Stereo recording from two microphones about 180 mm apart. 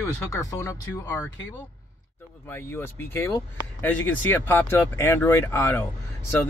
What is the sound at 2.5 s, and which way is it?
Speech, 10° left (ahead or behind).